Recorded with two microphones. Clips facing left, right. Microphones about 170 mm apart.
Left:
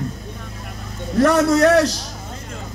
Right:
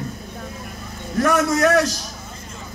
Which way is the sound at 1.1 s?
35° left (ahead or behind).